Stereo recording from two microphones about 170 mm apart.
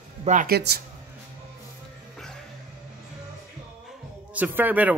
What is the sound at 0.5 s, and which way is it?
Speech, 70° right (ahead or behind).